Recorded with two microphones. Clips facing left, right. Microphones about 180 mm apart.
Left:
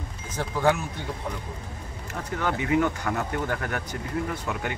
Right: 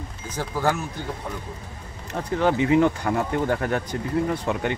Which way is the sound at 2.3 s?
25° right (ahead or behind).